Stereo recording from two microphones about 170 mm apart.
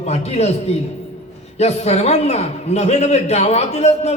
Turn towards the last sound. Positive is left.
turn(degrees=40)  # may be behind; listen again after turning